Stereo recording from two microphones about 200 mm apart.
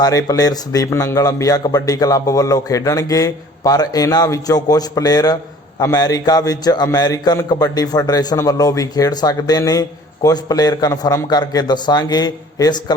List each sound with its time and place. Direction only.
0.0 s a man's voice: 15° left (ahead or behind)